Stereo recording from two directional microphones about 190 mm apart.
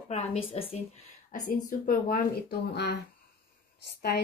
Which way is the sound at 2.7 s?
60° left (ahead or behind).